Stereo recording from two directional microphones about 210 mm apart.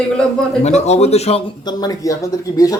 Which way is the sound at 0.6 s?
30° left (ahead or behind).